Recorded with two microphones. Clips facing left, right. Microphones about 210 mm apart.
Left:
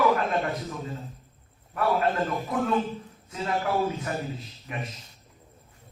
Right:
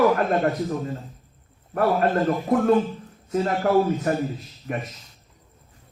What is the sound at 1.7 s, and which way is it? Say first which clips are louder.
A man's voice: right 4 dB; 50° right (ahead or behind).